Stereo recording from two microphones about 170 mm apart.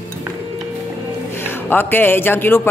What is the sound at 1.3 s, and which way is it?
A man's voice, 15° left (ahead or behind).